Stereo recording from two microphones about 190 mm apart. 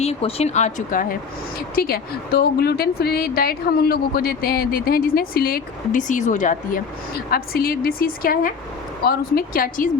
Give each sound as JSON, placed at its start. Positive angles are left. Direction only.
{"t": 0.0, "sound": "speech", "side_deg": 30}
{"t": 1.7, "sound": "a woman's voice", "side_deg": 50}
{"t": 7.3, "sound": "a woman's voice", "side_deg": 50}